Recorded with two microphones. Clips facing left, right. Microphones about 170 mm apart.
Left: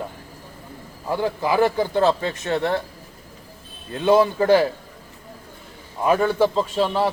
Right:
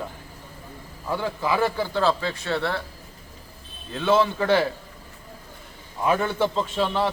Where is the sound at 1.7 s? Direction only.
20° left (ahead or behind).